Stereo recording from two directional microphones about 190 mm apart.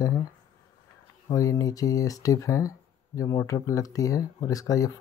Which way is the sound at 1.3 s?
15° left (ahead or behind).